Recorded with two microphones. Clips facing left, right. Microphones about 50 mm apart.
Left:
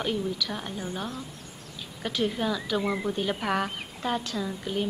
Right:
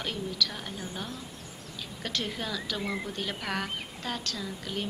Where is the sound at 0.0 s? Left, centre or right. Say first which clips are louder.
Left 3 dB; centre.